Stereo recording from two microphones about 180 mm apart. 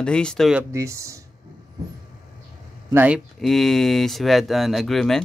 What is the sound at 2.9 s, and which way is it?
Speech, 10° right (ahead or behind).